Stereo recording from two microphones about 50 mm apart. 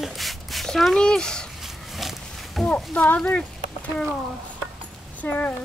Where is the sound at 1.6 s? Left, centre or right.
Centre.